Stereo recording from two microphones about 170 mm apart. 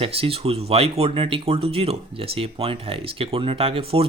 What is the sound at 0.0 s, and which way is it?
Speech, 35° right (ahead or behind).